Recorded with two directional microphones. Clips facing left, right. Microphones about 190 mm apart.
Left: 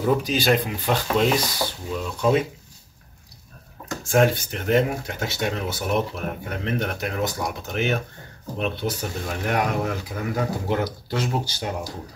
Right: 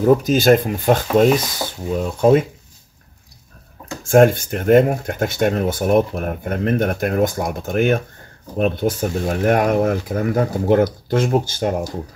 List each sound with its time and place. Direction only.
0.0 s speech: 45° right (ahead or behind)
4.0 s speech: 50° right (ahead or behind)